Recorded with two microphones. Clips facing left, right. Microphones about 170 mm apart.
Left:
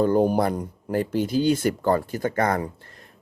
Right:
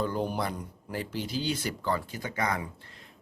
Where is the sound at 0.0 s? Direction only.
45° left (ahead or behind).